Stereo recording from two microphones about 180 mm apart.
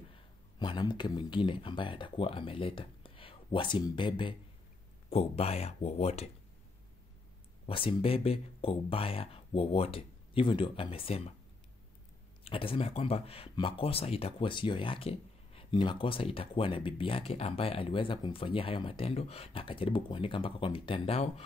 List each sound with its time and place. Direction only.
0.6 s speech: 25° left (ahead or behind)
7.6 s speech: 30° left (ahead or behind)
12.4 s speech: 30° left (ahead or behind)